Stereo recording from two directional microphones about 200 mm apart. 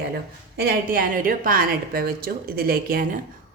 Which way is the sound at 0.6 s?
45° right (ahead or behind).